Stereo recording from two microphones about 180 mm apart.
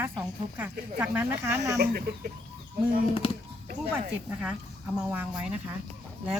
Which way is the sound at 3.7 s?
50° right (ahead or behind).